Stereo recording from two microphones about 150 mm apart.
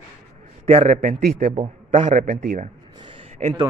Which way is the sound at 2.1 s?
55° right (ahead or behind).